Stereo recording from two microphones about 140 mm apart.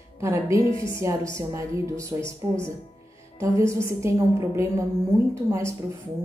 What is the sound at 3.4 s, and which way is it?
A woman's voice, 20° right (ahead or behind).